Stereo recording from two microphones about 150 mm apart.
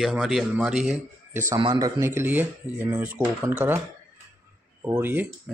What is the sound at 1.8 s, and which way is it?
Speech, 20° right (ahead or behind).